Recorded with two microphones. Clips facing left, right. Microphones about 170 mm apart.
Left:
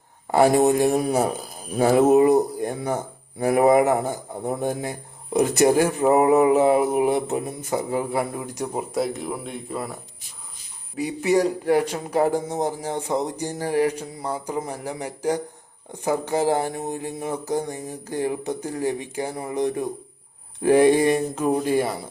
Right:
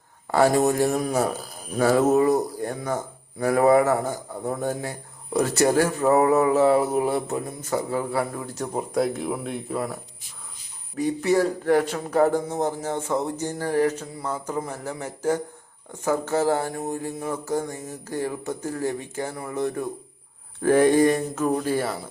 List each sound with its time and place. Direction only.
0.3 s a man's voice: 15° left (ahead or behind)
8.8 s speech: centre (ahead or behind)
10.9 s a man's voice: 10° left (ahead or behind)